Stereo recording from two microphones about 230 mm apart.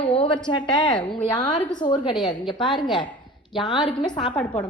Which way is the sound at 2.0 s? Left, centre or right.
Centre.